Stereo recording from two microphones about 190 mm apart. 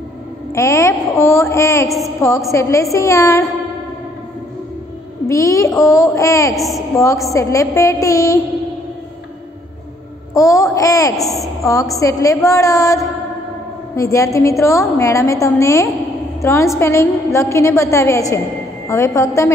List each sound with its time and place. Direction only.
0.6 s a woman's voice: 15° left (ahead or behind)
5.3 s a woman's voice: 15° left (ahead or behind)
6.5 s a woman's voice: centre (ahead or behind)
7.0 s a woman's voice: 15° left (ahead or behind)
10.3 s a woman's voice: 15° left (ahead or behind)
11.1 s a woman's voice: centre (ahead or behind)
11.6 s a woman's voice: 15° left (ahead or behind)